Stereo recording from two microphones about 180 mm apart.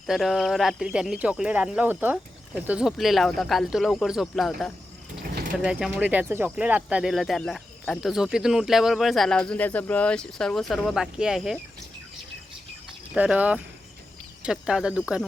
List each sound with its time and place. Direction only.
0.1 s speech: centre (ahead or behind)
5.2 s a sound: 55° right (ahead or behind)
5.5 s speech: 5° right (ahead or behind)
13.1 s speech: 5° right (ahead or behind)